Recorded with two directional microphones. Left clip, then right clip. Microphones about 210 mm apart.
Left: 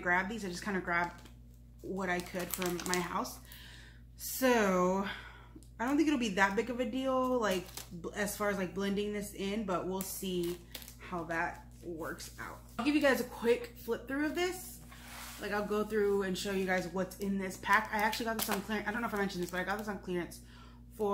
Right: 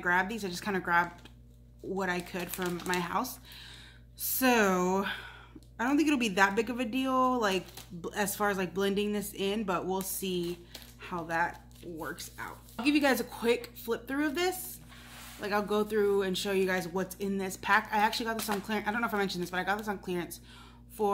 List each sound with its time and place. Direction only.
0.0 s speech: 55° right (ahead or behind)
4.2 s speech: 55° right (ahead or behind)